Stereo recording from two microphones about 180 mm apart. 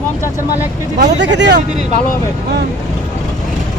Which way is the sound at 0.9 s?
75° right (ahead or behind).